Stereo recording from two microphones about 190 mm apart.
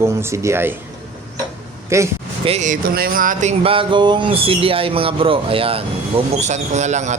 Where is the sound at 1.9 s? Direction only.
15° right (ahead or behind).